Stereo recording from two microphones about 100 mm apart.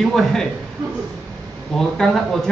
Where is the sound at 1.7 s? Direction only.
5° left (ahead or behind).